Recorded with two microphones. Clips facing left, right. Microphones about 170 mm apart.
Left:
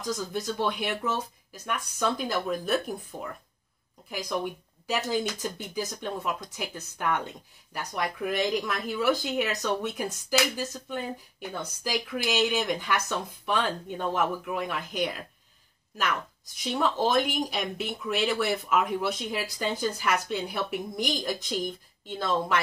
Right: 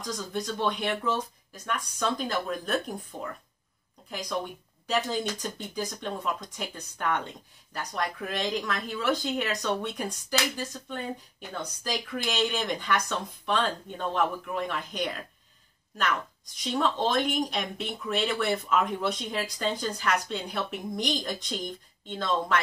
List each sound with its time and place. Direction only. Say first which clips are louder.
0.3 s speech: right 3 dB; 5° left (ahead or behind)
16.7 s speech: left 1 dB; 5° left (ahead or behind)